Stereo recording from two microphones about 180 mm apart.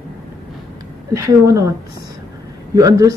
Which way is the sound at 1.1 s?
15° right (ahead or behind).